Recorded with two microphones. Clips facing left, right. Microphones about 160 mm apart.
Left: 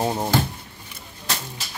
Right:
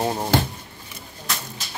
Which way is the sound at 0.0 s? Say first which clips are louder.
Left 1 dB; 10° left (ahead or behind).